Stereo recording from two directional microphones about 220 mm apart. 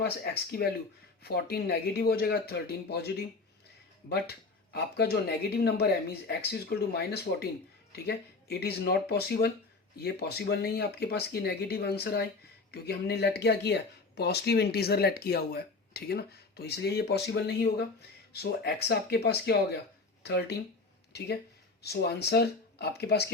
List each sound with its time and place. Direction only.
0.0 s speech: 45° left (ahead or behind)